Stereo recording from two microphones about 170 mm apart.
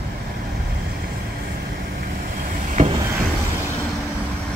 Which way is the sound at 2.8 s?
50° right (ahead or behind).